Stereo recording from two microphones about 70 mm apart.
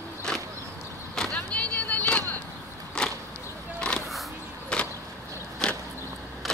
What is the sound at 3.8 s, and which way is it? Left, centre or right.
Vehicle, centre.